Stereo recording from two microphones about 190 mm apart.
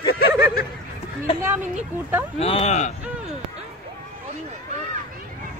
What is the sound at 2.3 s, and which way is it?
Speech, 30° left (ahead or behind).